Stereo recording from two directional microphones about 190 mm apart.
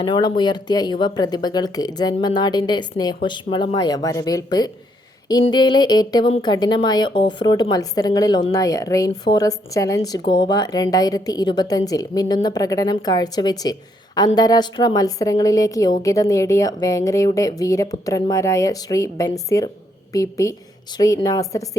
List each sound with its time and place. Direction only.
0.0 s a woman's voice: 25° left (ahead or behind)